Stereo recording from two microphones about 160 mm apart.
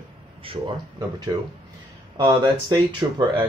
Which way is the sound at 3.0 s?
20° right (ahead or behind).